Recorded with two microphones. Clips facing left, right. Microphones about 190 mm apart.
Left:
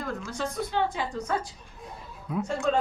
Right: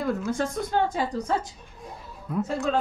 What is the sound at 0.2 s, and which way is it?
A woman's voice, 50° right (ahead or behind).